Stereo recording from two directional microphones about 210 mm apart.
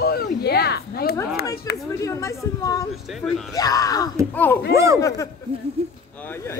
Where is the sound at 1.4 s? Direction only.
15° left (ahead or behind).